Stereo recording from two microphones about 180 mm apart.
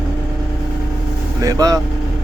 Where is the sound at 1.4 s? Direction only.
20° right (ahead or behind).